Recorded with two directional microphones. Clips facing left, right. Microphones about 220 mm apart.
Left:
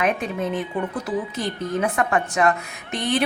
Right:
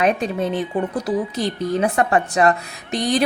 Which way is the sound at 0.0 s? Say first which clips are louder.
Right 4 dB; 35° right (ahead or behind).